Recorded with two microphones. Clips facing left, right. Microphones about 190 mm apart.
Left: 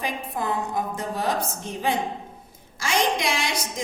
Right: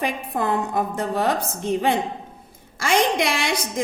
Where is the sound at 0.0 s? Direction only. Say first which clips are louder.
Right 4 dB; 60° right (ahead or behind).